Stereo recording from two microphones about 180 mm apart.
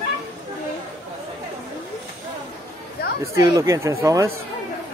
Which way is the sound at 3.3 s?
20° right (ahead or behind).